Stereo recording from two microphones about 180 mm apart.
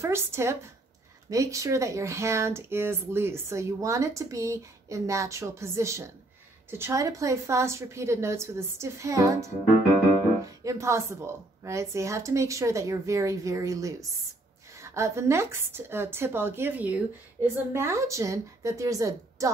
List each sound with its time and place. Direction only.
0.0 s speech: 15° right (ahead or behind)